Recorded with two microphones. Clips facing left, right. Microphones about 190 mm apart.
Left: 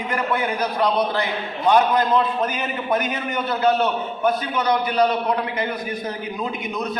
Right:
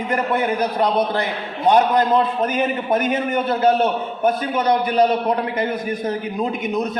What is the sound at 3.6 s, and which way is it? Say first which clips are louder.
A man's voice: right 1 dB; 45° right (ahead or behind).